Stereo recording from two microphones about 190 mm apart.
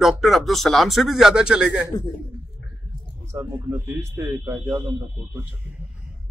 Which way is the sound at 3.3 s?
15° right (ahead or behind).